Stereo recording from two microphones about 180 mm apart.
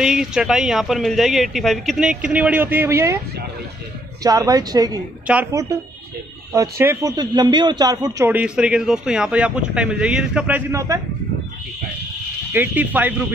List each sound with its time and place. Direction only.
0.0 s speech: 5° right (ahead or behind)
4.2 s a woman's voice: 20° right (ahead or behind)
5.2 s a man's voice: 10° right (ahead or behind)
12.5 s a man's voice: 10° right (ahead or behind)